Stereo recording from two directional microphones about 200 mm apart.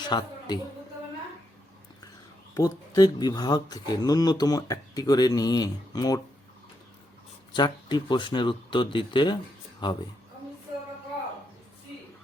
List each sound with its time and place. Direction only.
0.0 s a man's voice: 20° left (ahead or behind)
2.6 s speech: 20° left (ahead or behind)
7.5 s speech: 20° left (ahead or behind)